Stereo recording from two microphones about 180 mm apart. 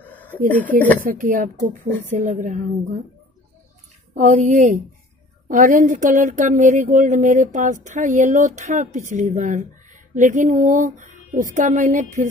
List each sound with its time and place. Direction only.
0.0 s a sound: 10° left (ahead or behind)
1.0 s speech: 45° right (ahead or behind)
4.1 s speech: 45° right (ahead or behind)